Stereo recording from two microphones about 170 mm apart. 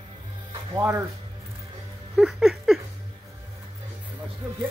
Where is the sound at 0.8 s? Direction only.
15° right (ahead or behind).